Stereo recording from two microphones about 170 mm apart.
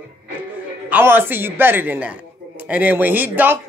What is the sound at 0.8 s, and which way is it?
A man's voice, 10° right (ahead or behind).